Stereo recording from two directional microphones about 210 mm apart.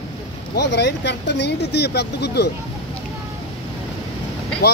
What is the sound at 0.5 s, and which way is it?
Speech, 55° left (ahead or behind).